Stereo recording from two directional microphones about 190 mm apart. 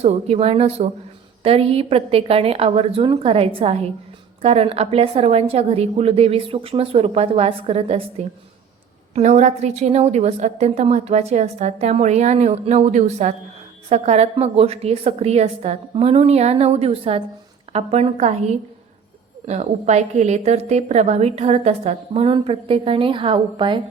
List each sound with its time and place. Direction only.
0.0 s a woman's voice: 35° right (ahead or behind)
9.1 s a woman's voice: 35° right (ahead or behind)